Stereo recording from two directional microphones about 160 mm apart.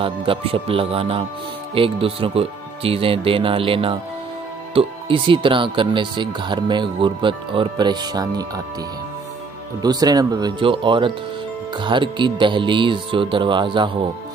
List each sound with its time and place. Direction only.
0.0 s speech: 35° right (ahead or behind)
9.8 s speech: 25° right (ahead or behind)